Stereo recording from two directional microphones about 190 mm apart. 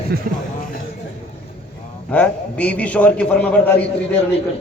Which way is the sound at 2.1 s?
5° left (ahead or behind).